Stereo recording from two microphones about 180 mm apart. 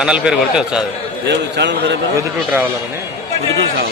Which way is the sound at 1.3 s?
70° right (ahead or behind).